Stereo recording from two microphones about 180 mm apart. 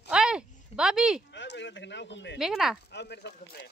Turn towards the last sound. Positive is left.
turn(degrees=65)  # may be behind; listen again after turning